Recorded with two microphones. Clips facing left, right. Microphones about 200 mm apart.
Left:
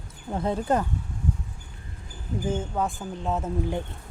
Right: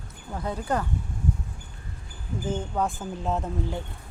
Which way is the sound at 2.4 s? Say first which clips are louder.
Even; 5° left (ahead or behind).